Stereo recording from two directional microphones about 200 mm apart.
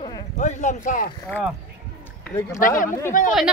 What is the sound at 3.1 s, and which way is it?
Speech, 40° left (ahead or behind).